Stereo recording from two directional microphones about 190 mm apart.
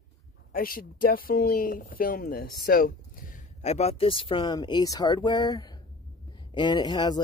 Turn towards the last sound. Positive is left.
turn(degrees=20)  # may be behind; listen again after turning